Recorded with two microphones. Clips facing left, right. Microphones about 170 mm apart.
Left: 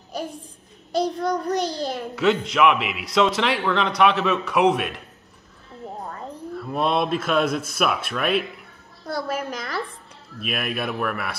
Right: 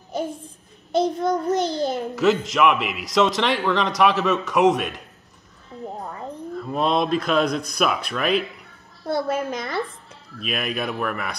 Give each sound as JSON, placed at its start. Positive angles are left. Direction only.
{"t": 0.9, "sound": "a child's voice", "side_deg": -25}
{"t": 2.1, "sound": "a man's voice", "side_deg": 0}
{"t": 6.5, "sound": "a man's voice", "side_deg": 5}
{"t": 9.0, "sound": "a child's voice", "side_deg": -25}
{"t": 10.4, "sound": "a man's voice", "side_deg": 5}